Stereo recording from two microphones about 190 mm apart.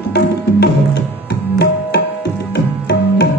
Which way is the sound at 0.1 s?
60° left (ahead or behind).